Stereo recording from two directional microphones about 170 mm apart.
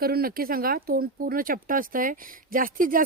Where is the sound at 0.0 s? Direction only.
60° right (ahead or behind).